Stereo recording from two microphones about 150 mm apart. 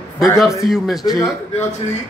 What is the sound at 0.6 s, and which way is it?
Speech, centre (ahead or behind).